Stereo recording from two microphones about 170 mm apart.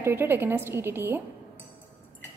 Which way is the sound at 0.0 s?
15° right (ahead or behind).